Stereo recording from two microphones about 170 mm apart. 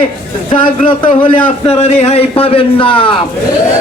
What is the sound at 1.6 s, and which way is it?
A man's voice, 35° left (ahead or behind).